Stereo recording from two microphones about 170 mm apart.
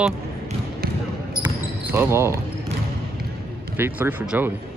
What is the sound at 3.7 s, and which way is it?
Speech, 15° right (ahead or behind).